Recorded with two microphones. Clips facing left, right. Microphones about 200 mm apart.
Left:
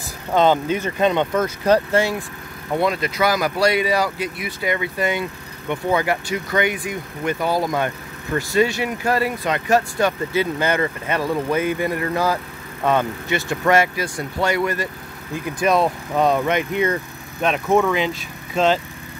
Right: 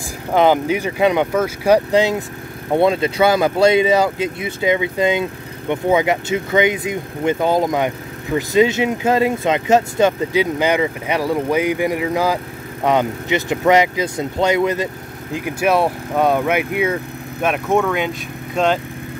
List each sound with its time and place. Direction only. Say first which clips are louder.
0.3 s speech: right 2 dB; 10° right (ahead or behind)